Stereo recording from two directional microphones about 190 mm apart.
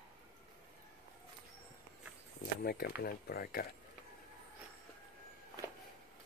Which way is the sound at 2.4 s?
55° left (ahead or behind).